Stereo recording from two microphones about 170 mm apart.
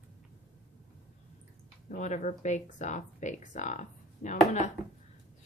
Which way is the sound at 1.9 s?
45° left (ahead or behind).